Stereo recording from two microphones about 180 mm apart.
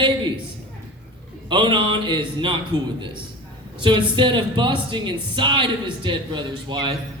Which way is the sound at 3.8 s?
25° right (ahead or behind).